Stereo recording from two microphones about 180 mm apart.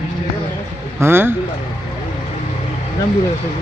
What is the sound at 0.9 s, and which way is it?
Speech, 15° right (ahead or behind).